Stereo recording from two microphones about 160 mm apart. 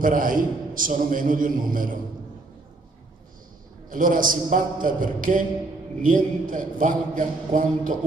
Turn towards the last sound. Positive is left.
turn(degrees=-55)  # may be behind; listen again after turning